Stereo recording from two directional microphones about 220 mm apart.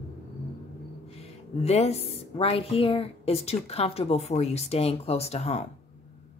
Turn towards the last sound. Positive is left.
turn(degrees=30)  # may be behind; listen again after turning